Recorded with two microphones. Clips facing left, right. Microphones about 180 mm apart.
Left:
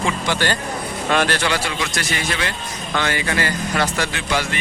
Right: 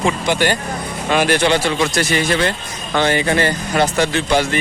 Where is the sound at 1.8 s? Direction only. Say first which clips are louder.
Right 7 dB; 30° right (ahead or behind).